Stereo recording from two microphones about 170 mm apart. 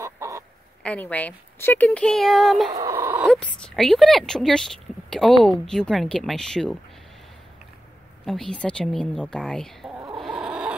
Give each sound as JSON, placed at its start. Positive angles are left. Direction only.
{"t": 0.0, "sound": "chicken", "side_deg": -15}
{"t": 0.8, "sound": "speech", "side_deg": 10}
{"t": 2.8, "sound": "a sound", "side_deg": -15}
{"t": 3.3, "sound": "speech", "side_deg": 0}
{"t": 8.3, "sound": "speech", "side_deg": 5}
{"t": 10.2, "sound": "a sound", "side_deg": -5}